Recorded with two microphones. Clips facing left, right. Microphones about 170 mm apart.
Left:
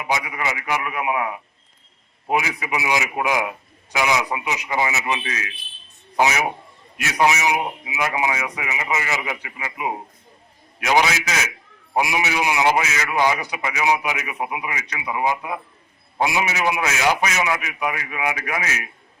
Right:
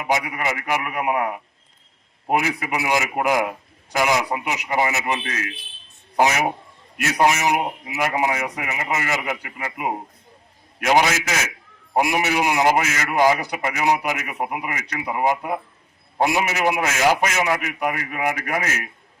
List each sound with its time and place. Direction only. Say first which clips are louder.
0.0 s a man's voice: right 2 dB; 50° right (ahead or behind)
6.9 s a man's voice: right 1 dB; 50° right (ahead or behind)